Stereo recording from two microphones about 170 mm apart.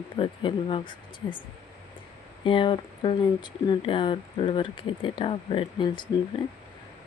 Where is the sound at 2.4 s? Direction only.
30° left (ahead or behind).